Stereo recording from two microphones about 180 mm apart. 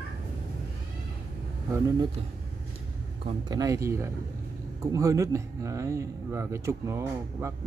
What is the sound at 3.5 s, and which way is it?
Speech, 20° right (ahead or behind).